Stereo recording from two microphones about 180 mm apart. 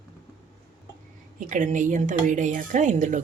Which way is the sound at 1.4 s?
45° right (ahead or behind).